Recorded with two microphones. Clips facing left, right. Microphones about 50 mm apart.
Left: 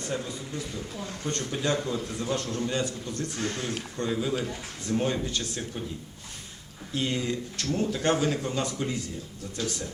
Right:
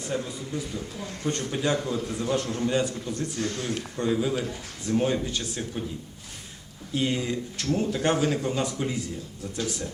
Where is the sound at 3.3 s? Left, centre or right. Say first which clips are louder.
Even; left.